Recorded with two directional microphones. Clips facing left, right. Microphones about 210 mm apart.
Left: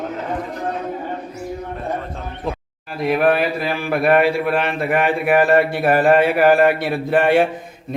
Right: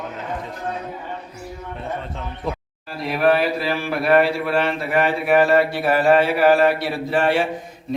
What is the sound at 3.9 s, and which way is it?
Speech, 55° left (ahead or behind).